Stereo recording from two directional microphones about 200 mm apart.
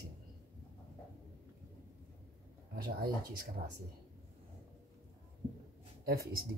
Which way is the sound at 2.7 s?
50° right (ahead or behind).